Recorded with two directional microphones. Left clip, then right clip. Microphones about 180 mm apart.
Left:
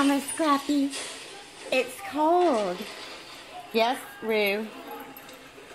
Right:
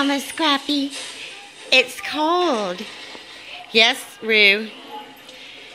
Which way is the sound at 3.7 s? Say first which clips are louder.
Right 9 dB; 15° right (ahead or behind).